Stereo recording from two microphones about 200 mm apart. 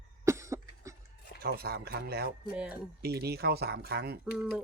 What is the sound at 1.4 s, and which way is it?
Speech, 50° right (ahead or behind).